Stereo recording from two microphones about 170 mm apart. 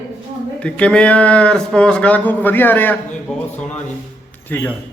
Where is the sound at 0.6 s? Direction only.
5° left (ahead or behind).